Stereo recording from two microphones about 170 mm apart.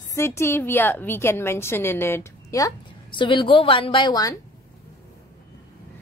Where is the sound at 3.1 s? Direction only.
30° left (ahead or behind).